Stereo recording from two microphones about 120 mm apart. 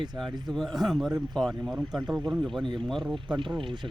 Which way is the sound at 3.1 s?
45° right (ahead or behind).